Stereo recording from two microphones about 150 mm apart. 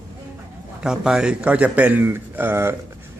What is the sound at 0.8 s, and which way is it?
A man's voice, 5° right (ahead or behind).